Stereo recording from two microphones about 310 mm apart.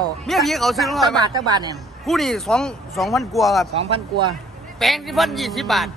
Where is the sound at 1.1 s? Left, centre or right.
Centre.